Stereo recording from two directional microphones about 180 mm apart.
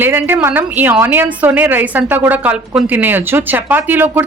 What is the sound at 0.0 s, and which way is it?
A woman's voice, 10° right (ahead or behind).